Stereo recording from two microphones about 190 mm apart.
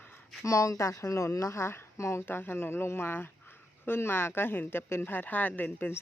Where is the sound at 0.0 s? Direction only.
10° left (ahead or behind).